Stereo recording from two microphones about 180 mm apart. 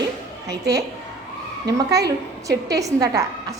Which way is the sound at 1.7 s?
20° right (ahead or behind).